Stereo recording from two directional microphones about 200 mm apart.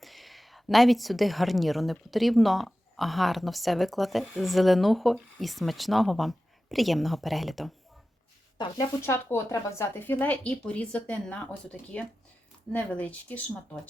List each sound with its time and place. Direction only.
0.0 s a woman's voice: centre (ahead or behind)
9.0 s speech: 10° left (ahead or behind)